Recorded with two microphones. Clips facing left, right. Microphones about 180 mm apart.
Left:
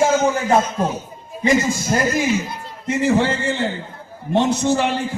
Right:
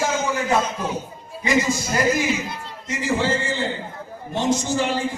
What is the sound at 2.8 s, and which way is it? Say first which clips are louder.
A man's voice: left 5 dB; 60° left (ahead or behind).